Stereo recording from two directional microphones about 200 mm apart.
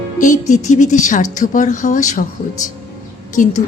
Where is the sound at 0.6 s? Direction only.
35° left (ahead or behind).